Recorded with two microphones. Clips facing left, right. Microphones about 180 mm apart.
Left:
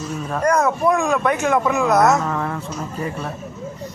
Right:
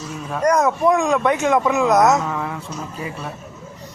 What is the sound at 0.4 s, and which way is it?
Speech, 20° right (ahead or behind).